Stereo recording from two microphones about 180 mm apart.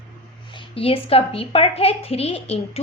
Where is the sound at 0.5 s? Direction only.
30° left (ahead or behind).